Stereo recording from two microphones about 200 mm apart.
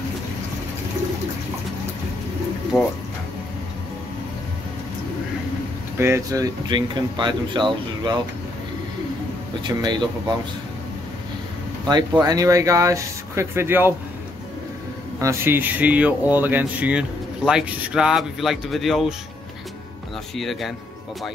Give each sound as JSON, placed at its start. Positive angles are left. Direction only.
{"t": 2.7, "sound": "speech", "side_deg": 0}
{"t": 5.9, "sound": "speech", "side_deg": -10}
{"t": 9.6, "sound": "speech", "side_deg": -20}
{"t": 11.9, "sound": "speech", "side_deg": -20}
{"t": 15.1, "sound": "speech", "side_deg": -15}
{"t": 20.3, "sound": "speech", "side_deg": 0}